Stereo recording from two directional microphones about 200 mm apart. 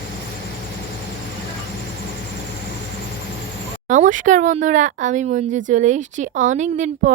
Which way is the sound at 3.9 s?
40° right (ahead or behind).